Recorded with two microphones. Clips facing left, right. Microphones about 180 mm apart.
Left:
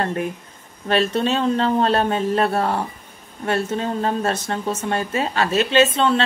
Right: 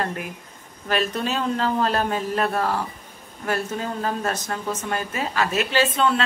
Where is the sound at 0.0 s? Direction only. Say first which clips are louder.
Left 5 dB; 30° left (ahead or behind).